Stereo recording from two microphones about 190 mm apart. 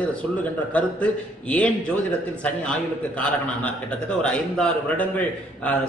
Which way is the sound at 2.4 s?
5° left (ahead or behind).